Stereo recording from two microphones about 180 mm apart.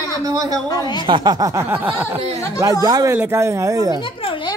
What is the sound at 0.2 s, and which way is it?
Speech, 20° right (ahead or behind).